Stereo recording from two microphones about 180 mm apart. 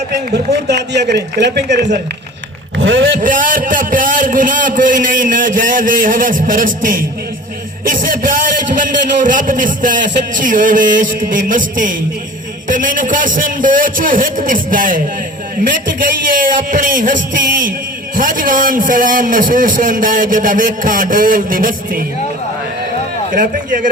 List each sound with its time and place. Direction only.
0.3 s a man's voice: 65° right (ahead or behind)
2.7 s speech: 90° right
3.2 s a man's voice: 50° right (ahead or behind)
16.7 s a man's voice: 50° right (ahead or behind)
23.3 s a man's voice: 50° right (ahead or behind)